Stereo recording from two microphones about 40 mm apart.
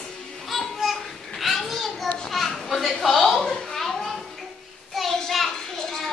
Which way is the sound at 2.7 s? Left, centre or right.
Centre.